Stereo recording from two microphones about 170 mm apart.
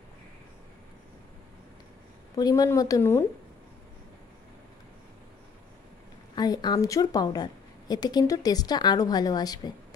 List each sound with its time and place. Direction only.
2.3 s a woman's voice: 20° left (ahead or behind)
6.3 s a woman's voice: 25° left (ahead or behind)